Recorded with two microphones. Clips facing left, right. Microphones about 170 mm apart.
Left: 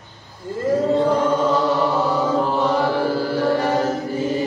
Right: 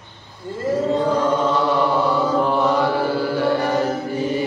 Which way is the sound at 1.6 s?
40° left (ahead or behind).